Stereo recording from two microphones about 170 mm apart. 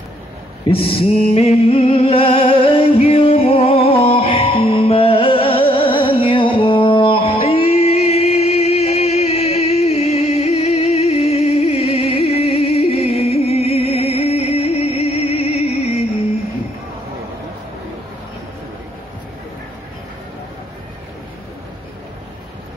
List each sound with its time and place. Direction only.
0.8 s music: 35° left (ahead or behind)